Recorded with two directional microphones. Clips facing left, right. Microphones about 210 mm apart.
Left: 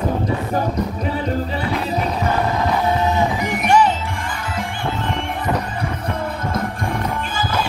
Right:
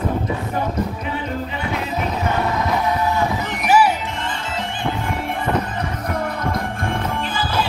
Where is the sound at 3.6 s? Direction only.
5° right (ahead or behind).